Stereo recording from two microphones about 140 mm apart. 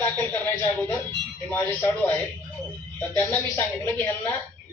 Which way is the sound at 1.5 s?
15° left (ahead or behind).